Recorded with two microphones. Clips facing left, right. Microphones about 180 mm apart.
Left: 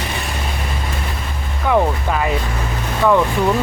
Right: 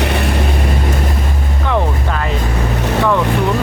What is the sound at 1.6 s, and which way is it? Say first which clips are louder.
Music: left 2 dB; 5° left (ahead or behind).